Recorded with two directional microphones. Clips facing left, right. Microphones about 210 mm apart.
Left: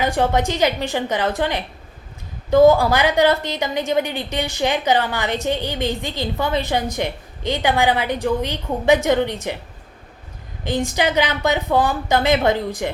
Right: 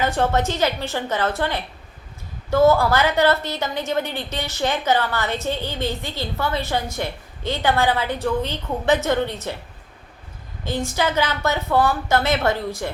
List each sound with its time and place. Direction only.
0.0 s a woman's voice: 15° left (ahead or behind)
10.6 s a woman's voice: 15° left (ahead or behind)